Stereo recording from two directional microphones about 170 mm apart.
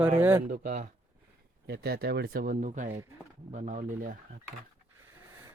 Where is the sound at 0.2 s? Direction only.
15° right (ahead or behind).